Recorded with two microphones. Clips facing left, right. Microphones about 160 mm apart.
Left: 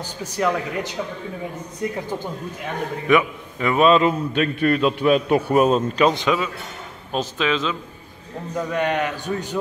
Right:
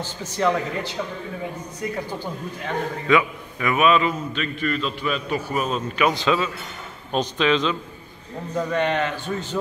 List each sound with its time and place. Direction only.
0.2 s a man's voice: 5° left (ahead or behind)
2.6 s a man's voice: 20° left (ahead or behind)
4.3 s a man's voice: 55° left (ahead or behind)
5.7 s speech: 40° left (ahead or behind)
6.0 s a man's voice: 20° left (ahead or behind)